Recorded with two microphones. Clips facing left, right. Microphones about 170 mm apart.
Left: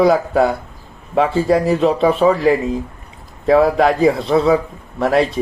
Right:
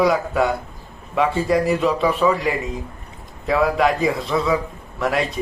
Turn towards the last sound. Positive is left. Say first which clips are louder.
# left 6 dB
turn(degrees=30)  # may be behind; listen again after turning